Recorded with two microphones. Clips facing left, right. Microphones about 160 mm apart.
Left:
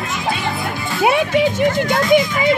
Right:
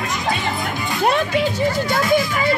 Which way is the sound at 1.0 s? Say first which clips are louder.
Left 4 dB; 10° left (ahead or behind).